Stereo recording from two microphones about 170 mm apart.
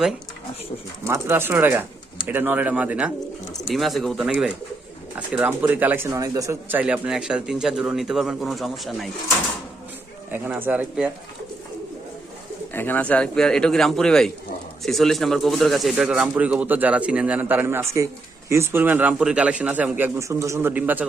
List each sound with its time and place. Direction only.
1.0 s speech: 15° right (ahead or behind); by 9.0 s centre (ahead or behind)
10.3 s speech: 10° right (ahead or behind)
12.7 s speech: 10° left (ahead or behind); by 21.1 s 10° right (ahead or behind)